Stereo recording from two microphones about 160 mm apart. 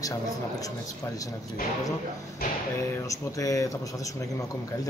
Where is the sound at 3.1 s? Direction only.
20° left (ahead or behind).